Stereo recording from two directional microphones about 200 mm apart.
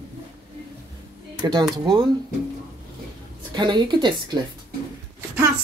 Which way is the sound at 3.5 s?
20° right (ahead or behind).